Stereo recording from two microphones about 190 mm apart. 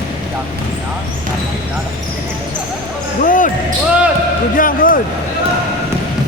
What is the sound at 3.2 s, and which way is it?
Basketball bounce, 45° left (ahead or behind).